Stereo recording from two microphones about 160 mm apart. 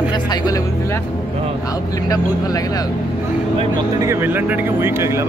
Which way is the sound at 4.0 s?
15° right (ahead or behind).